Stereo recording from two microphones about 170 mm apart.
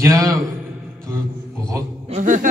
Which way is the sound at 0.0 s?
20° right (ahead or behind).